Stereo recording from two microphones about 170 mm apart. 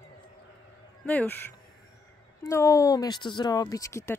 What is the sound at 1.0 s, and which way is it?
Speech, 10° left (ahead or behind).